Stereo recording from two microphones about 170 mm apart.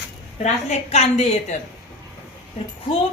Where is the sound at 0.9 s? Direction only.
40° left (ahead or behind).